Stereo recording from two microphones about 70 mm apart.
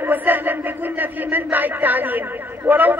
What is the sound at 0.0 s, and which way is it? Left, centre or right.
Speech, right.